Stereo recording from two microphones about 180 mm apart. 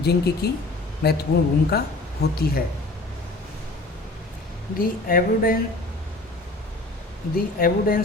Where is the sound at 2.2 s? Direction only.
65° left (ahead or behind).